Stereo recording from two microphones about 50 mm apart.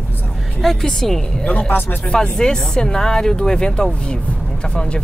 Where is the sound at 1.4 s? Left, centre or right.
Left.